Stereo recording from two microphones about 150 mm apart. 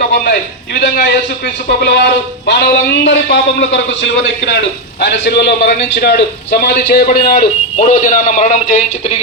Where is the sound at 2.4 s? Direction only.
90° left.